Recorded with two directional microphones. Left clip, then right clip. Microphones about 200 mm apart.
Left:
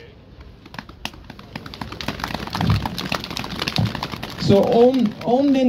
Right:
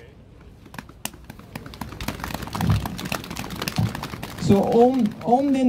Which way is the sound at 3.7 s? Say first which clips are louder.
Left 5 dB; 55° right (ahead or behind).